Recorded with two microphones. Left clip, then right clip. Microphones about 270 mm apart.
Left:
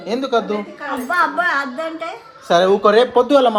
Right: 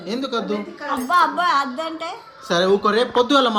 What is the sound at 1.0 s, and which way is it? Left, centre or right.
Speech, centre.